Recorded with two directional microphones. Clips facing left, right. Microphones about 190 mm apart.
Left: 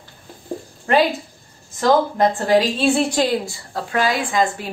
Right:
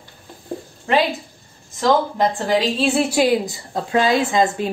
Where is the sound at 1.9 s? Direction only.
Centre (ahead or behind).